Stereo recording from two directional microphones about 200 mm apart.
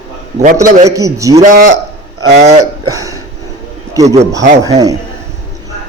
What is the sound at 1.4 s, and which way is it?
Speech, 35° right (ahead or behind).